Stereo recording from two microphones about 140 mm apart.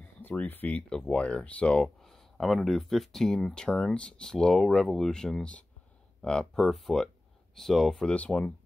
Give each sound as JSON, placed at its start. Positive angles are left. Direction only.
{"t": 0.2, "sound": "speech", "side_deg": 15}